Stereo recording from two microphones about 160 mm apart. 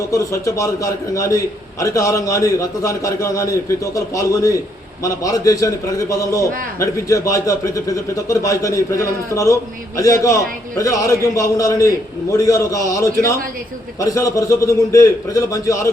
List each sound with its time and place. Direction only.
0.1 s a man's voice: 20° left (ahead or behind)